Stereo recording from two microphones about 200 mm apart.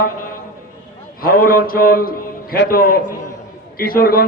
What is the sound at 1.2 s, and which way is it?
A man's voice, 45° left (ahead or behind).